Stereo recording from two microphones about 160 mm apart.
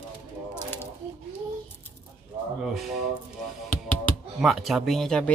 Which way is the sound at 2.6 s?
Centre (ahead or behind).